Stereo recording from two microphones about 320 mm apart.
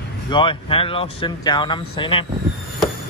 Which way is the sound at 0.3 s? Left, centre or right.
Centre.